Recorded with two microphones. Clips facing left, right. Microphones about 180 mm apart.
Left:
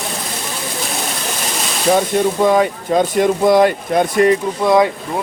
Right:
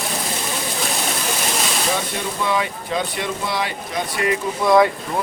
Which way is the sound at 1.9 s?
45° left (ahead or behind).